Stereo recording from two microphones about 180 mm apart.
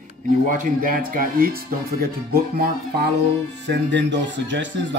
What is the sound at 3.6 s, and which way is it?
Speech, 75° right (ahead or behind).